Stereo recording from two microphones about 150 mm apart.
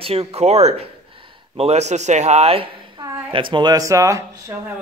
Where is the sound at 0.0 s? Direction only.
40° right (ahead or behind); by 4.6 s 20° right (ahead or behind).